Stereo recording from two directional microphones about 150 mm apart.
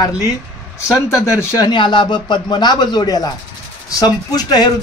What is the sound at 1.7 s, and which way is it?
Speech, 30° left (ahead or behind).